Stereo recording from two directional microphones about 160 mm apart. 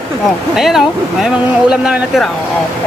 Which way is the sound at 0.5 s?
Centre (ahead or behind).